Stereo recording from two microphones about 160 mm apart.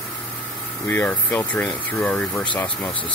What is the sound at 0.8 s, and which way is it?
Speech, 10° left (ahead or behind).